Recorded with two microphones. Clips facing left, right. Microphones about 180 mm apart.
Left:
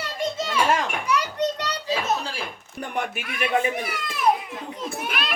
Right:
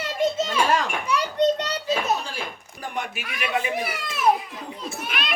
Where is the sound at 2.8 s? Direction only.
55° left (ahead or behind).